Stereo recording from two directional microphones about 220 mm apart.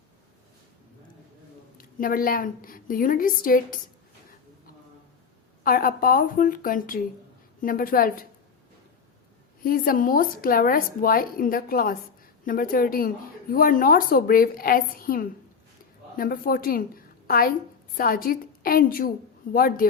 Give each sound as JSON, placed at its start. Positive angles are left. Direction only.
{"t": 1.8, "sound": "a woman's voice", "side_deg": 40}
{"t": 5.6, "sound": "a woman's voice", "side_deg": 40}
{"t": 9.6, "sound": "a woman's voice", "side_deg": 40}